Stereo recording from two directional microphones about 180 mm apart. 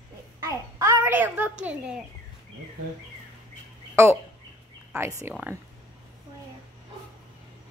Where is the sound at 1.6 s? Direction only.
10° right (ahead or behind).